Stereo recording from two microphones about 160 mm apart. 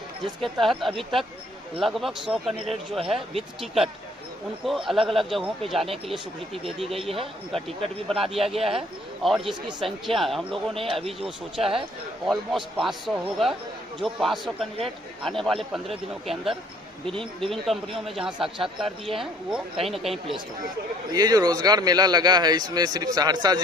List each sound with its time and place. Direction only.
0.2 s speech: centre (ahead or behind)
7.1 s speech: 35° right (ahead or behind)
8.1 s speech: centre (ahead or behind)
10.8 s speech: 35° right (ahead or behind)
11.1 s speech: centre (ahead or behind)
17.4 s speech: centre (ahead or behind)
19.9 s speech: centre (ahead or behind)
21.1 s a man's voice: 25° right (ahead or behind)